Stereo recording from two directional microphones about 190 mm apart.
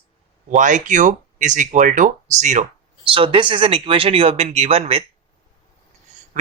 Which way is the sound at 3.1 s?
30° right (ahead or behind).